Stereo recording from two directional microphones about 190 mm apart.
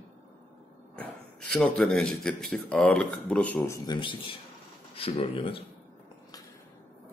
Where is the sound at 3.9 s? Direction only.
25° left (ahead or behind).